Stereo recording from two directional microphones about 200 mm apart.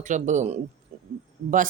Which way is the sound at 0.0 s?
40° right (ahead or behind).